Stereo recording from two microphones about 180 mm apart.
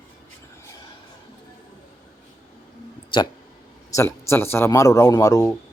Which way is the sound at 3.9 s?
15° left (ahead or behind).